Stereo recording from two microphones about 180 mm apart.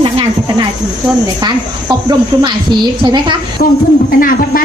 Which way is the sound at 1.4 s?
20° right (ahead or behind).